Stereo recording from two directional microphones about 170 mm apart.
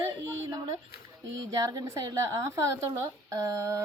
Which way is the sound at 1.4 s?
20° right (ahead or behind).